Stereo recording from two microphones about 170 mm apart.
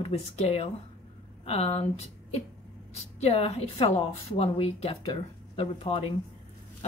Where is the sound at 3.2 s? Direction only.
35° left (ahead or behind).